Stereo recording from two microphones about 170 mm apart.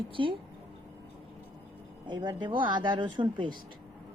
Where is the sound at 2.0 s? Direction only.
25° right (ahead or behind).